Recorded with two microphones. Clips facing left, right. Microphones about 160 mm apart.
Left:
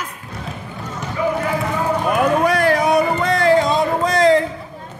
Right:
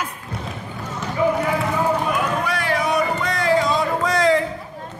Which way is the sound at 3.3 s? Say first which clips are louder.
Left 4 dB; 25° left (ahead or behind).